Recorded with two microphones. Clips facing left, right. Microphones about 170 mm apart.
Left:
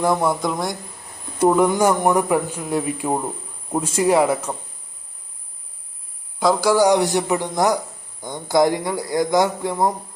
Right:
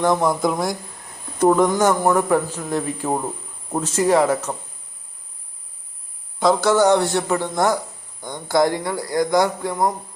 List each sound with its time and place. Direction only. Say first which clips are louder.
0.0 s speech: right 1 dB; 5° left (ahead or behind)
1.4 s a man's voice: even; 10° left (ahead or behind)
6.7 s a man's voice: left 1 dB; 15° left (ahead or behind)